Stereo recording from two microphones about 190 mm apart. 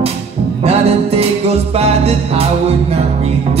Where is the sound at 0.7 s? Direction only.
35° right (ahead or behind).